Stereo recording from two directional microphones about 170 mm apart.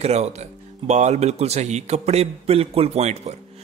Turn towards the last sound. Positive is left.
turn(degrees=-40)  # may be behind; listen again after turning